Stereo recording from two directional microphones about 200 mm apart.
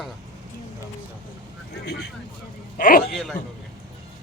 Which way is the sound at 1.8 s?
55° left (ahead or behind).